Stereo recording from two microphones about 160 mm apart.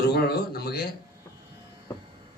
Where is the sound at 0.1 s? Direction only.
75° left (ahead or behind).